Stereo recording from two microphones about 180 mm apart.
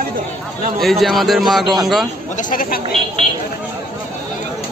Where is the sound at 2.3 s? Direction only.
50° left (ahead or behind).